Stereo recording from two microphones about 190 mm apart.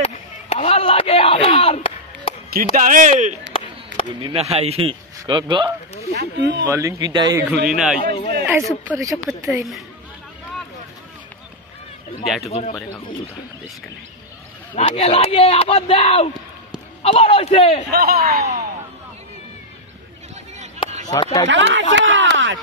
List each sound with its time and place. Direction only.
0.5 s chop: 30° left (ahead or behind)
2.5 s speech: 45° right (ahead or behind); by 5.7 s 25° right (ahead or behind)
6.1 s speech: 65° right (ahead or behind)
6.6 s speech: 15° right (ahead or behind)
7.5 s a man's voice: centre (ahead or behind)
8.0 s speech: 25° left (ahead or behind)
8.5 s speech: 10° right (ahead or behind)
12.4 s speech: 35° left (ahead or behind)
14.8 s speech: 30° left (ahead or behind)
17.9 s speech: 55° right (ahead or behind)
21.1 s speech: 20° left (ahead or behind)
21.5 s speech: 75° right (ahead or behind)